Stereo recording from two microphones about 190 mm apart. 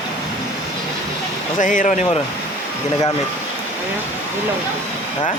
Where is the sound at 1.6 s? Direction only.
45° left (ahead or behind).